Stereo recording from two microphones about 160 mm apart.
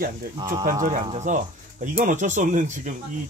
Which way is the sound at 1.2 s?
50° right (ahead or behind).